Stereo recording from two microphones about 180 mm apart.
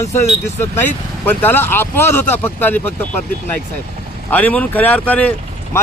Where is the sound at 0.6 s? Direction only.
10° left (ahead or behind).